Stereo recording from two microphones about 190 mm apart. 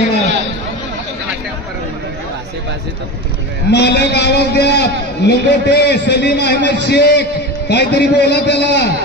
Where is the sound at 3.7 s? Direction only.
60° left (ahead or behind).